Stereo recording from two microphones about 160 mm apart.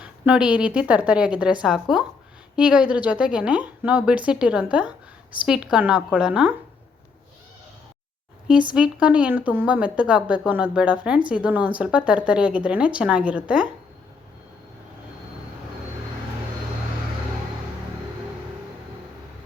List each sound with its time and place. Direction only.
0.0 s a woman's voice: 5° right (ahead or behind)
8.4 s speech: 5° right (ahead or behind)